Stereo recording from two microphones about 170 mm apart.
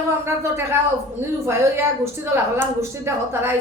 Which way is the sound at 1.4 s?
15° right (ahead or behind).